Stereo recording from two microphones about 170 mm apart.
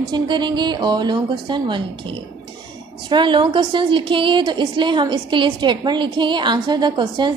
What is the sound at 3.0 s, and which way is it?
A woman's voice, 25° right (ahead or behind).